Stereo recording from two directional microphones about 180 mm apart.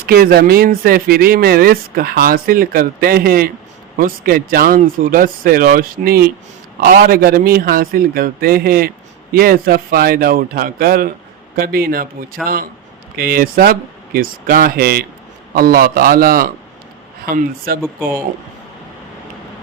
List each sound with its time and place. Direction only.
0.0 s speech: 55° right (ahead or behind)
13.1 s speech: 55° right (ahead or behind)